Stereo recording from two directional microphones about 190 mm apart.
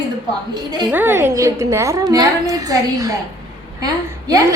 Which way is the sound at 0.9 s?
10° right (ahead or behind).